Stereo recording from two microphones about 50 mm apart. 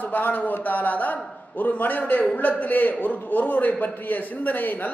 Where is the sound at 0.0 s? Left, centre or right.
Left.